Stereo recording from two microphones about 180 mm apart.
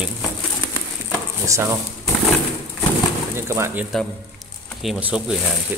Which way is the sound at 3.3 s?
15° right (ahead or behind).